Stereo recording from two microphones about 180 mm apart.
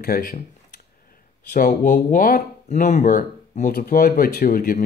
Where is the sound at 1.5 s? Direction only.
50° left (ahead or behind).